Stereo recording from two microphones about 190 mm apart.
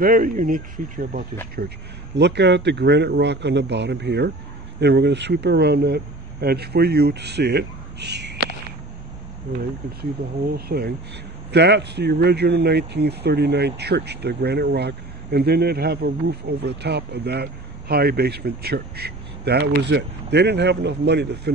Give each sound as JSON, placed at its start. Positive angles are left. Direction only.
{"t": 0.0, "sound": "speech", "side_deg": -45}
{"t": 1.6, "sound": "speech", "side_deg": -55}
{"t": 10.5, "sound": "speech", "side_deg": -55}